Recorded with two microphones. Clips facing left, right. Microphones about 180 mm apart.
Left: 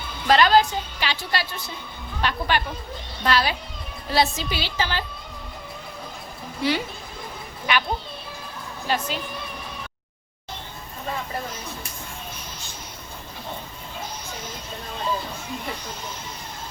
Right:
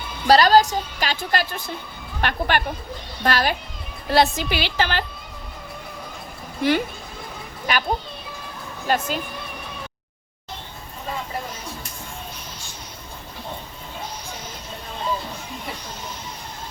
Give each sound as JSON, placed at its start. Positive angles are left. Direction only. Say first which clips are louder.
{"t": 0.3, "sound": "a woman's voice", "louder": "right 3 dB", "side_deg": -40}
{"t": 4.1, "sound": "a woman's voice", "louder": "right 4 dB", "side_deg": -60}
{"t": 6.6, "sound": "a woman's voice", "louder": "right 4 dB", "side_deg": -50}
{"t": 7.7, "sound": "a child's voice", "louder": "even", "side_deg": -40}
{"t": 8.9, "sound": "a woman's voice", "louder": "right 3 dB", "side_deg": -45}